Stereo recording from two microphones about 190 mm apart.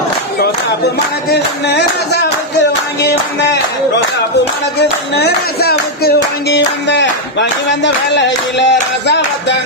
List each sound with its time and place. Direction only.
1.3 s music: 60° left (ahead or behind)
4.8 s speech: 60° left (ahead or behind)
6.5 s clapping: 65° left (ahead or behind)
9.0 s music: 65° left (ahead or behind)